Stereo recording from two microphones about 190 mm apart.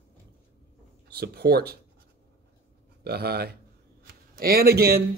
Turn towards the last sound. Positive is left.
turn(degrees=-55)  # may be behind; listen again after turning